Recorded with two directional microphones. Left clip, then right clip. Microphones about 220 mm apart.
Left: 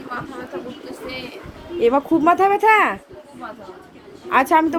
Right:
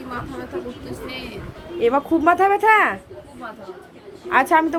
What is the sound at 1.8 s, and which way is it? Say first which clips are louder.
Speech: left 2 dB; 20° left (ahead or behind).